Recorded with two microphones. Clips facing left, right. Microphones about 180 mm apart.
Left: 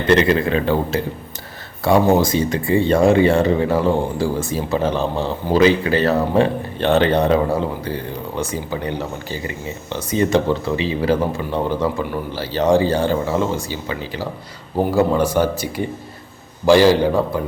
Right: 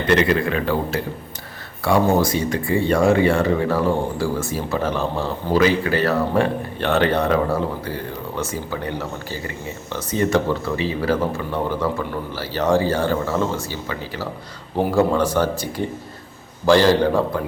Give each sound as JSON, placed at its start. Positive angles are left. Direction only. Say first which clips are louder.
{"t": 0.1, "sound": "speech", "louder": "left 3 dB", "side_deg": 30}
{"t": 8.4, "sound": "speech", "louder": "left 2 dB", "side_deg": 15}
{"t": 14.8, "sound": "speech", "louder": "left 1 dB", "side_deg": 5}